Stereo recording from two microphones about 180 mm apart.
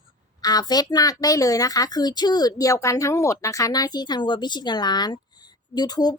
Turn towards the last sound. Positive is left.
turn(degrees=20)  # may be behind; listen again after turning